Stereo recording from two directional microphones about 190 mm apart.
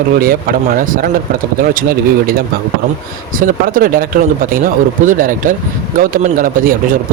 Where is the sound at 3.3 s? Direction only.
45° right (ahead or behind).